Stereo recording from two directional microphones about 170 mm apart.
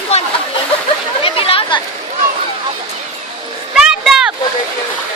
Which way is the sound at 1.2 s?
35° left (ahead or behind).